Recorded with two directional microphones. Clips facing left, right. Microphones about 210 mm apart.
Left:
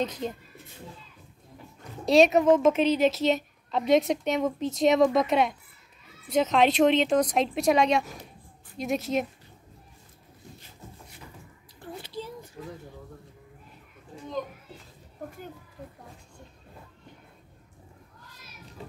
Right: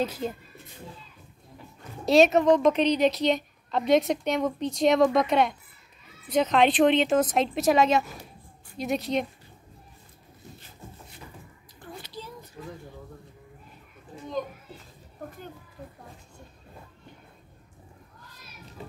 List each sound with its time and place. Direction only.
0.0 s speech: 5° right (ahead or behind)
2.0 s a woman's voice: centre (ahead or behind)
11.8 s a sound: 25° left (ahead or behind)